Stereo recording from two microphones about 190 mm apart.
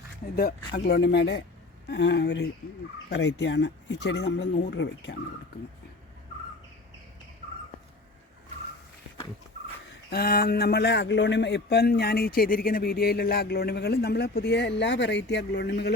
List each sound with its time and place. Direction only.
0.3 s a man's voice: 50° left (ahead or behind); by 5.1 s 70° left (ahead or behind)
10.1 s a man's voice: 50° left (ahead or behind)